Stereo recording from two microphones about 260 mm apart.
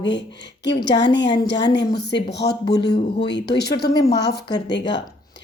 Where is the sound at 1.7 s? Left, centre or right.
Left.